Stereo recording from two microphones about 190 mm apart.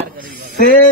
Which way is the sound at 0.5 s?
50° left (ahead or behind).